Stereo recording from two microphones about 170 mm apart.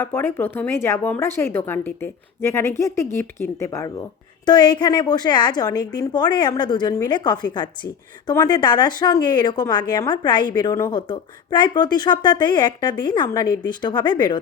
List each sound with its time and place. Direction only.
0.0 s a woman's voice: 15° left (ahead or behind)